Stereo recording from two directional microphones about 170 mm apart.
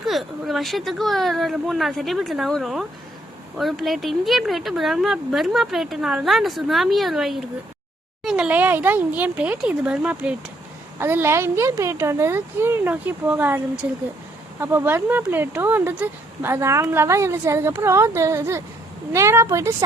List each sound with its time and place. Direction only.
0.0 s speech: centre (ahead or behind)
14.6 s speech: 15° right (ahead or behind)